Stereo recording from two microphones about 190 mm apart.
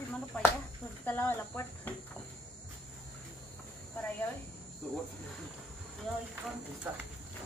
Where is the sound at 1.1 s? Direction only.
10° left (ahead or behind).